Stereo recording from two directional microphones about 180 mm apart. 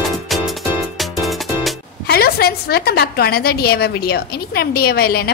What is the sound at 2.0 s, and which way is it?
A woman's voice, 60° left (ahead or behind).